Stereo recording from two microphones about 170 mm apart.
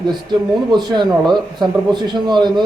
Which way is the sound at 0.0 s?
25° right (ahead or behind).